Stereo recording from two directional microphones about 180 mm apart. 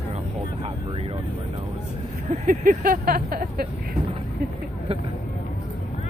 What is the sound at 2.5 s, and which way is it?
Vehicle, 50° right (ahead or behind).